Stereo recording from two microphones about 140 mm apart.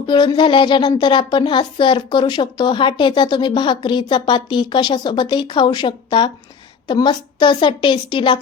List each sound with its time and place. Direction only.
0.0 s a woman's voice: 35° left (ahead or behind)